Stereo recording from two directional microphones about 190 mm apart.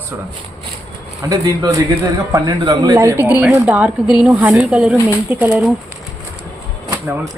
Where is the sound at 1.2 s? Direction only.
20° right (ahead or behind).